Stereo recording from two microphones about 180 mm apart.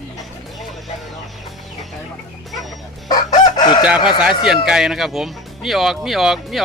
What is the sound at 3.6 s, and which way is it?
Chicken, 25° left (ahead or behind).